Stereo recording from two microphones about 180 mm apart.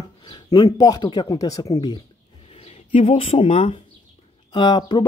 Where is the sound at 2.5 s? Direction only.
40° left (ahead or behind).